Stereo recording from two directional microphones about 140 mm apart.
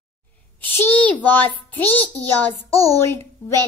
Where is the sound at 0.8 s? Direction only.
15° left (ahead or behind).